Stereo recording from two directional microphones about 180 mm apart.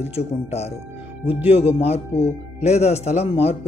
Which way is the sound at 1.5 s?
35° left (ahead or behind).